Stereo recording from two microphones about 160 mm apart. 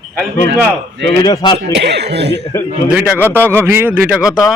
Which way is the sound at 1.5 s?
90° right.